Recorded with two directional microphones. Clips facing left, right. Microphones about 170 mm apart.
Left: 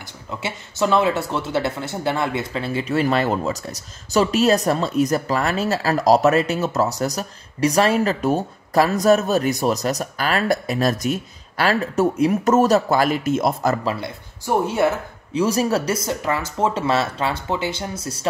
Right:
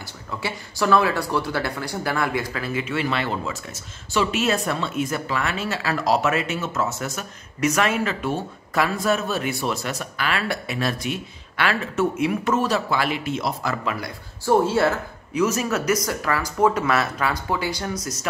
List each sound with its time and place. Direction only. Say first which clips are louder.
0.0 s speech: left 1 dB; 20° left (ahead or behind); by 13.7 s 45° left (ahead or behind)
13.8 s speech: left 3 dB; 25° left (ahead or behind)
15.3 s speech: left 3 dB; 35° left (ahead or behind)